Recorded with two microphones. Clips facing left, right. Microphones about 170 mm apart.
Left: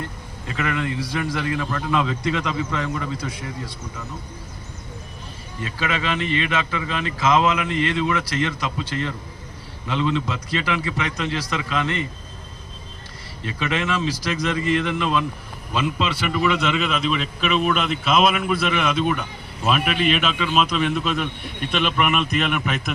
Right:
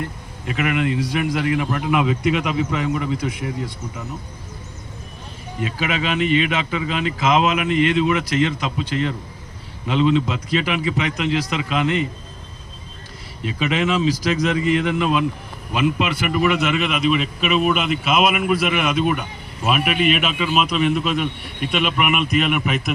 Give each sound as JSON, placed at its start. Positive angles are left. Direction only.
{"t": 0.4, "sound": "a man's voice", "side_deg": -15}
{"t": 5.5, "sound": "a man's voice", "side_deg": -20}
{"t": 13.4, "sound": "a man's voice", "side_deg": -20}